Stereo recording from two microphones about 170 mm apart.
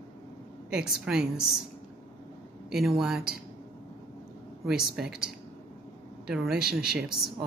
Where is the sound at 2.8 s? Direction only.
Centre (ahead or behind).